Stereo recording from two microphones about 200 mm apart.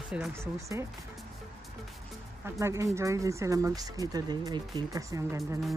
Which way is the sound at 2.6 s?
15° right (ahead or behind).